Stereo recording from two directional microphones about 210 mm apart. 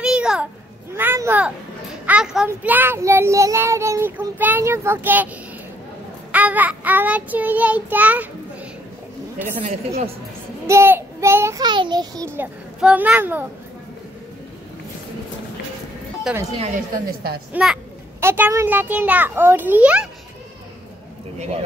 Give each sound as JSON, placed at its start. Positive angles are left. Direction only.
{"t": 0.0, "sound": "a sound", "side_deg": -5}
{"t": 2.0, "sound": "child singing", "side_deg": -5}
{"t": 6.3, "sound": "child singing", "side_deg": -5}
{"t": 9.6, "sound": "a woman's voice", "side_deg": -30}
{"t": 10.7, "sound": "child singing", "side_deg": -10}
{"t": 12.4, "sound": "child singing", "side_deg": -10}
{"t": 16.3, "sound": "speech", "side_deg": -5}
{"t": 17.5, "sound": "speech", "side_deg": -5}
{"t": 18.2, "sound": "child singing", "side_deg": -10}
{"t": 21.4, "sound": "a woman's voice", "side_deg": -30}